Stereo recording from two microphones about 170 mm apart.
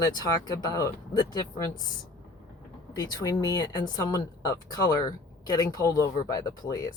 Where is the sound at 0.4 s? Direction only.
20° left (ahead or behind).